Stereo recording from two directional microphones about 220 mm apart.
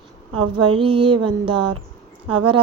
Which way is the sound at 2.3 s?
90° right.